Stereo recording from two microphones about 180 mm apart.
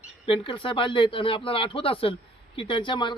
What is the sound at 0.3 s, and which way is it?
A man's voice, 30° left (ahead or behind).